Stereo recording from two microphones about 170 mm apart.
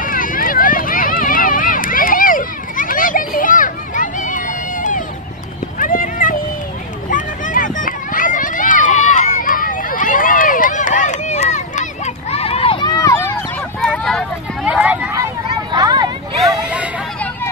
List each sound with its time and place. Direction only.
0.0 s run: 55° left (ahead or behind)
5.8 s horse: 55° left (ahead or behind)
7.1 s a sound: 50° left (ahead or behind); by 15.1 s 5° right (ahead or behind)
15.7 s vehicle: 25° right (ahead or behind)
16.6 s hubbub: 10° right (ahead or behind)